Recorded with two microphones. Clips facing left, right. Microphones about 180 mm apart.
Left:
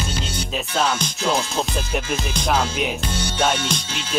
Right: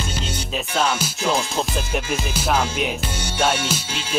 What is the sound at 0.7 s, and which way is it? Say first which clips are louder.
Music: even; 5° right (ahead or behind).